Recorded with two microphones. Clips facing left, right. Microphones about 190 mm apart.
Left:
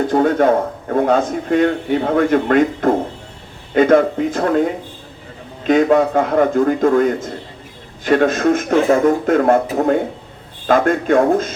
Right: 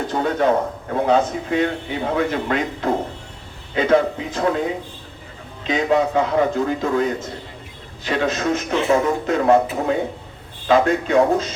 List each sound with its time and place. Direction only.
0.1 s a man's voice: 50° left (ahead or behind)